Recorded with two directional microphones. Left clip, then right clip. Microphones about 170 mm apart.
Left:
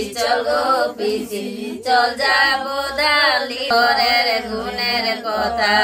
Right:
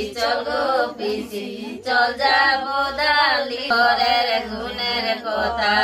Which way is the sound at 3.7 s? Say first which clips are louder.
Left 2 dB; 90° left.